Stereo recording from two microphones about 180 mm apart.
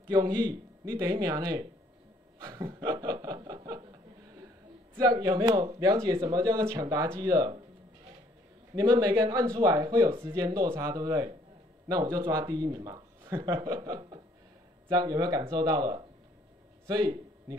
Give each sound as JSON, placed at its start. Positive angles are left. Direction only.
{"t": 0.1, "sound": "speech", "side_deg": -20}
{"t": 2.4, "sound": "chuckle", "side_deg": -20}
{"t": 4.9, "sound": "speech", "side_deg": -20}
{"t": 8.7, "sound": "speech", "side_deg": -20}
{"t": 13.6, "sound": "a sound", "side_deg": -25}
{"t": 14.9, "sound": "speech", "side_deg": -20}